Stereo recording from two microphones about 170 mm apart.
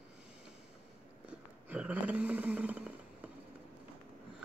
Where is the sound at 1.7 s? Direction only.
10° right (ahead or behind).